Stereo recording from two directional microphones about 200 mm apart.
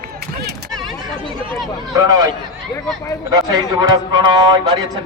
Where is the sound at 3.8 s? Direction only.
20° right (ahead or behind).